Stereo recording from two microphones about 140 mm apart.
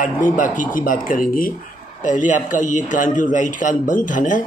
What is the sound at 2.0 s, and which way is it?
A man's voice, 65° left (ahead or behind).